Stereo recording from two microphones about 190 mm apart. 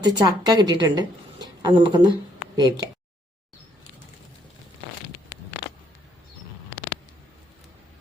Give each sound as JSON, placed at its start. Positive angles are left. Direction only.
{"t": 0.0, "sound": "a woman's voice", "side_deg": -20}